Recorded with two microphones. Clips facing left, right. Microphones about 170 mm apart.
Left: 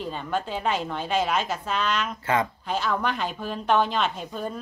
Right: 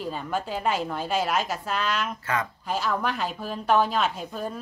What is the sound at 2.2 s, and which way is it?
Speech, 30° left (ahead or behind).